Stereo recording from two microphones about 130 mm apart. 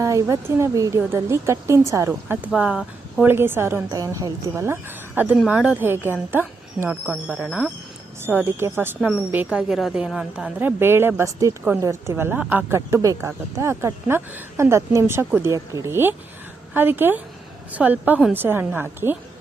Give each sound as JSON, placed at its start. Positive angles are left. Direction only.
{"t": 0.0, "sound": "speech", "side_deg": -25}
{"t": 2.5, "sound": "a woman's voice", "side_deg": -5}
{"t": 3.2, "sound": "a woman's voice", "side_deg": -15}
{"t": 8.2, "sound": "a woman's voice", "side_deg": -15}
{"t": 9.0, "sound": "a woman's voice", "side_deg": -5}